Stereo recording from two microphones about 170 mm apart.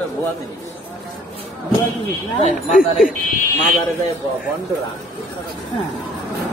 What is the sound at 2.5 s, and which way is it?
Speech, 50° left (ahead or behind).